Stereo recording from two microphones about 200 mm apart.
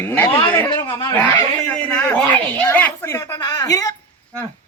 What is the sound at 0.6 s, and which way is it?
A man's voice, 25° left (ahead or behind).